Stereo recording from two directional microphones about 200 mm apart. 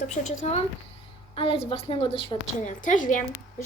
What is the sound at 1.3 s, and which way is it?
Speech, 25° left (ahead or behind).